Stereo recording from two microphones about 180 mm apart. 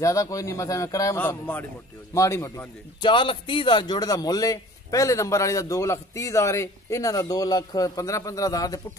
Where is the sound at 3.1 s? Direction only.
30° left (ahead or behind).